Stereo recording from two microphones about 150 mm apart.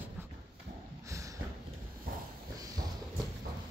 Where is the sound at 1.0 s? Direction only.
20° right (ahead or behind).